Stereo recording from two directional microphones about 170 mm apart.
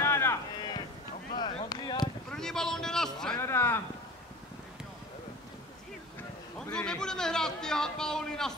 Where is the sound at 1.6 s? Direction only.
25° left (ahead or behind).